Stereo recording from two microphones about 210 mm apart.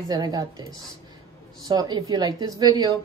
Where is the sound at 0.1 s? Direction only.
20° right (ahead or behind).